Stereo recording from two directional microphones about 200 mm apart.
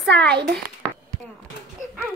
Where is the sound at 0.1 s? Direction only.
55° right (ahead or behind).